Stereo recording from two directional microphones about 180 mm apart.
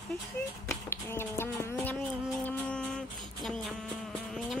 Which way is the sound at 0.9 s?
15° left (ahead or behind).